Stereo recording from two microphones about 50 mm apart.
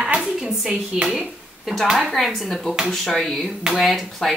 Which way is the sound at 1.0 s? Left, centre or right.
Centre.